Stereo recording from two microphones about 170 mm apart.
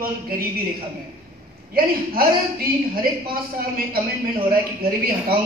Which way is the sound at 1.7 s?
60° right (ahead or behind).